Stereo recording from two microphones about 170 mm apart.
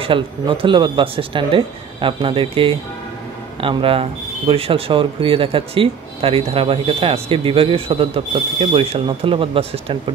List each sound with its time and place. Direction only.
0.0 s speech: 30° right (ahead or behind)